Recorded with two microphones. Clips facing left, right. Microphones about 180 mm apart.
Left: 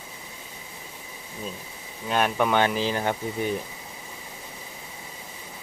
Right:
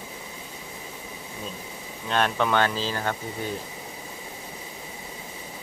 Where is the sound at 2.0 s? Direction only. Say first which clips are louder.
Left 1 dB; 10° left (ahead or behind).